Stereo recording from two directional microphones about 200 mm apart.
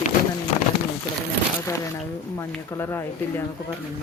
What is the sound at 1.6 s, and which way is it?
Speech, 15° left (ahead or behind).